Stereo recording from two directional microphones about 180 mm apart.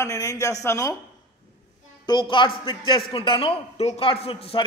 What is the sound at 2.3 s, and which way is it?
A man's voice, 25° left (ahead or behind).